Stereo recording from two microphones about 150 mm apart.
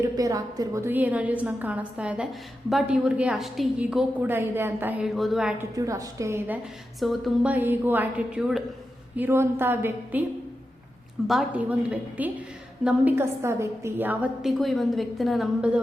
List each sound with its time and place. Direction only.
0.0 s a woman's voice: 25° right (ahead or behind)
5.0 s a woman's voice: centre (ahead or behind)
5.5 s a woman's voice: 20° right (ahead or behind)
7.0 s a woman's voice: centre (ahead or behind)
7.5 s a woman's voice: 15° right (ahead or behind)
9.1 s a woman's voice: 15° right (ahead or behind)
11.3 s a woman's voice: 5° right (ahead or behind)
14.6 s a woman's voice: centre (ahead or behind)